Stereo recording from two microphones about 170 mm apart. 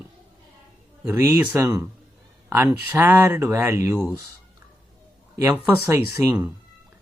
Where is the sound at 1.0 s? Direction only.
15° right (ahead or behind).